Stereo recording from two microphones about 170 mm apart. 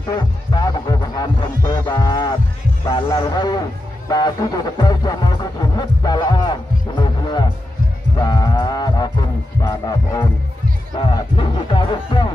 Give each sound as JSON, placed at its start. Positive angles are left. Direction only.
{"t": 0.1, "sound": "music", "side_deg": 25}